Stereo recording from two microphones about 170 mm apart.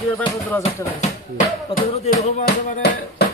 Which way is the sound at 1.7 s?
35° left (ahead or behind).